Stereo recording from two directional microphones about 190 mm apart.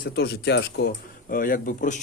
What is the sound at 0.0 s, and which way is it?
Speech, 60° left (ahead or behind).